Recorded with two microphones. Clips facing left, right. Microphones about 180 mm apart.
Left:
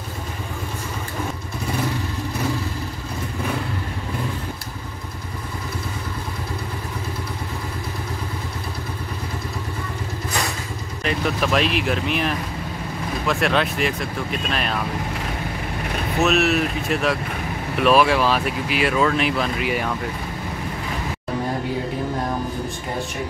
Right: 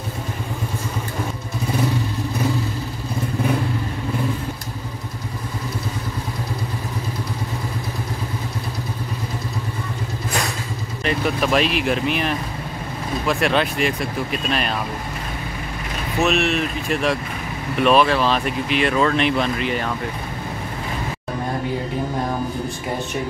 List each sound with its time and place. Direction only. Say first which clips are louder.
11.1 s speech: right 2 dB; centre (ahead or behind)
16.2 s speech: left 1 dB; centre (ahead or behind)